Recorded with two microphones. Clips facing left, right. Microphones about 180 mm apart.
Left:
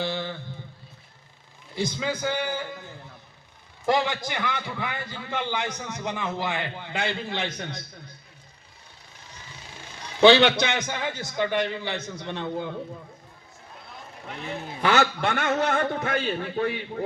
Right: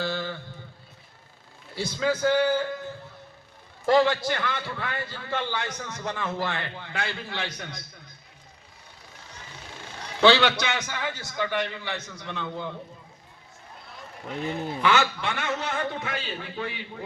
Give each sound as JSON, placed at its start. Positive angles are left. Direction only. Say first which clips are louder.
{"t": 0.0, "sound": "a sound", "louder": "even", "side_deg": 20}
{"t": 1.7, "sound": "a man's voice", "louder": "right 2 dB", "side_deg": 15}
{"t": 3.8, "sound": "a man's voice", "louder": "right 4 dB", "side_deg": 15}
{"t": 10.2, "sound": "a man's voice", "louder": "left 3 dB", "side_deg": 20}
{"t": 14.8, "sound": "a man's voice", "louder": "left 3 dB", "side_deg": 40}